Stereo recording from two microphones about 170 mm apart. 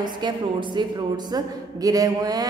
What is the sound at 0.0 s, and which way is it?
A woman's voice, 25° right (ahead or behind).